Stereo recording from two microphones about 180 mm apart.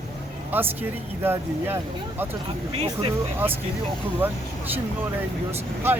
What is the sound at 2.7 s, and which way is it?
Speech, 35° right (ahead or behind).